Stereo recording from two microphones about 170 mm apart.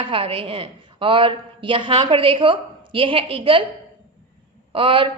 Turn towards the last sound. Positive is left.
turn(degrees=-30)  # may be behind; listen again after turning